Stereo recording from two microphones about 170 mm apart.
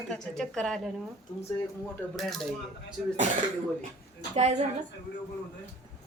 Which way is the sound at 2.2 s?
Centre (ahead or behind).